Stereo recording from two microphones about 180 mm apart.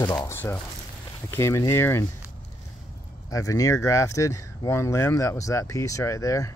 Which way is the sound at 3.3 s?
20° left (ahead or behind).